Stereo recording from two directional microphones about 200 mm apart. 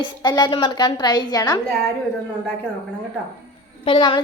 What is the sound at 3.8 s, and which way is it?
Speech, 25° left (ahead or behind).